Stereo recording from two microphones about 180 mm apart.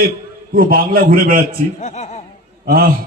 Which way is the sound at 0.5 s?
55° right (ahead or behind).